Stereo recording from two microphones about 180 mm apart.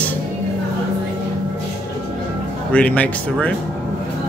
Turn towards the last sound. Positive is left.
turn(degrees=5)  # may be behind; listen again after turning